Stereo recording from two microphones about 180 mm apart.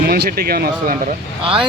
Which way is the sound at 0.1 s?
55° right (ahead or behind).